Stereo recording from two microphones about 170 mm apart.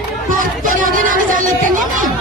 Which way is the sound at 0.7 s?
55° right (ahead or behind).